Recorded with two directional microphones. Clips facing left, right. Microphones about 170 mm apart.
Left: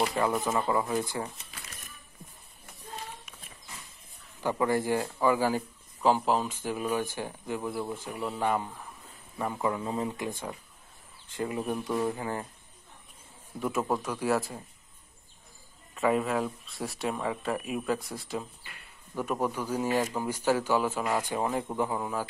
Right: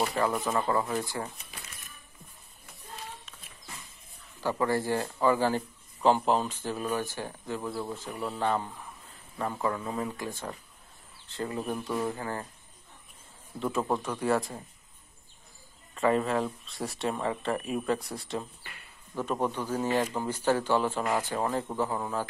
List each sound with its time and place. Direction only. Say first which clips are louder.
0.3 s speech: even; 5° left (ahead or behind); by 1.3 s 20° left (ahead or behind)
4.4 s speech: left 1 dB; 15° left (ahead or behind)
9.8 s speech: left 2 dB; 25° left (ahead or behind)
13.6 s speech: even; 10° left (ahead or behind)
15.9 s speech: right 1 dB; 5° left (ahead or behind)